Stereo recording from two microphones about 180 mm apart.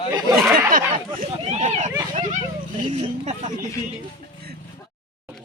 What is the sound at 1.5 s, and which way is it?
Speech, 40° right (ahead or behind).